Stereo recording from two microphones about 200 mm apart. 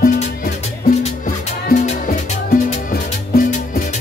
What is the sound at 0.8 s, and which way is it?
Music, 40° left (ahead or behind).